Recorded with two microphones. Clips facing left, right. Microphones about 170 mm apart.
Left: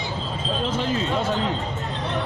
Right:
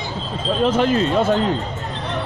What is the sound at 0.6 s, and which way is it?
Speech, 60° right (ahead or behind).